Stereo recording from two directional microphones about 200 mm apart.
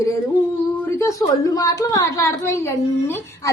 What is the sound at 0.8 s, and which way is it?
A woman's voice, 15° left (ahead or behind).